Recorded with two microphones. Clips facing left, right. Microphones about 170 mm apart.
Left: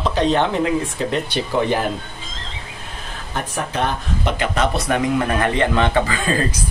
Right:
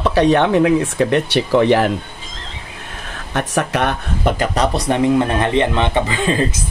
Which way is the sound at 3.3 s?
75° right (ahead or behind).